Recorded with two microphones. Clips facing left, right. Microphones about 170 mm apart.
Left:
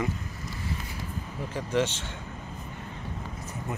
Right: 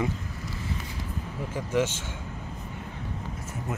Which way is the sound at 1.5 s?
10° right (ahead or behind).